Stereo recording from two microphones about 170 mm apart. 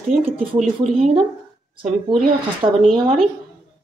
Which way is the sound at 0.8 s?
35° right (ahead or behind).